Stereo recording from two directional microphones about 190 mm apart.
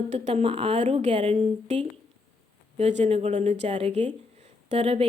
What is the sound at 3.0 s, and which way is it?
Speech, 35° right (ahead or behind).